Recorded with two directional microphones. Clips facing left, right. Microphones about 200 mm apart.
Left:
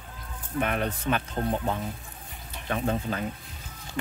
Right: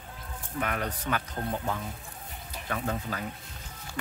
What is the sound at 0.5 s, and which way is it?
Speech, 25° left (ahead or behind).